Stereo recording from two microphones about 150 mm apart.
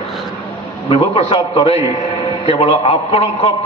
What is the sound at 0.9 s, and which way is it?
A man's voice, 40° left (ahead or behind).